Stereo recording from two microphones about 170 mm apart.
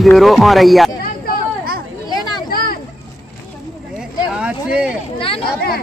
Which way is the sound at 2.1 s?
25° left (ahead or behind).